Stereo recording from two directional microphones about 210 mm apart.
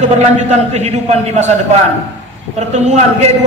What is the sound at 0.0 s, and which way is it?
Speech, 35° right (ahead or behind).